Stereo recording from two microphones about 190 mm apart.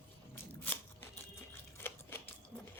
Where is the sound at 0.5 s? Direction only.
10° left (ahead or behind).